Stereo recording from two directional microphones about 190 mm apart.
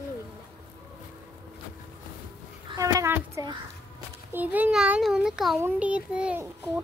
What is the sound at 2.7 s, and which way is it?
A child's voice, 15° right (ahead or behind).